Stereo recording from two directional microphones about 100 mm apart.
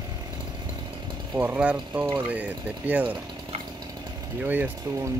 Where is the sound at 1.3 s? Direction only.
15° right (ahead or behind).